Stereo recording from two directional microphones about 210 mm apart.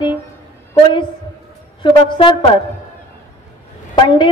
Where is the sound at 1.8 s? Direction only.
25° left (ahead or behind).